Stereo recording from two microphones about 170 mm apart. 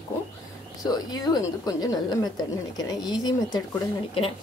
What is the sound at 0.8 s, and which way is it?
Speech, 20° left (ahead or behind).